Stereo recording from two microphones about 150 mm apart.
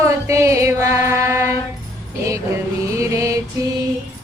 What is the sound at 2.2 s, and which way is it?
Music, 20° right (ahead or behind).